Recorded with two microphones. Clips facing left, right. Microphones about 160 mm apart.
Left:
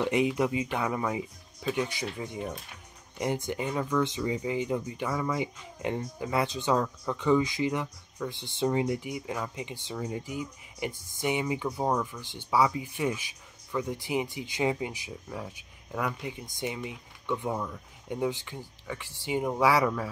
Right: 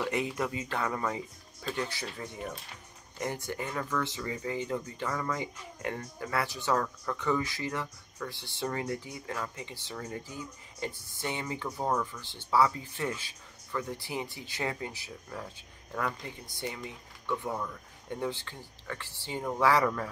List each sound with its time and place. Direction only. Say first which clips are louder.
0.0 s speech: left 5 dB; 15° left (ahead or behind)